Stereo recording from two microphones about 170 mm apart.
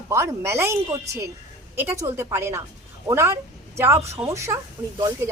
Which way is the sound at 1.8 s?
15° right (ahead or behind).